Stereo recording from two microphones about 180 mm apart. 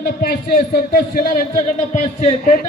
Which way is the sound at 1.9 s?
40° left (ahead or behind).